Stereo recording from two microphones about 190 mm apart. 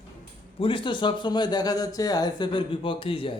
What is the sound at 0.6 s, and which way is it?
Speech, 25° left (ahead or behind).